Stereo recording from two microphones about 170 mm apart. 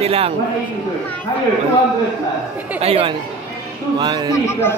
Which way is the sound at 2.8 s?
35° right (ahead or behind).